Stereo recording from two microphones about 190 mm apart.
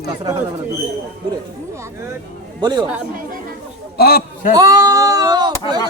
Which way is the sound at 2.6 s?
20° right (ahead or behind).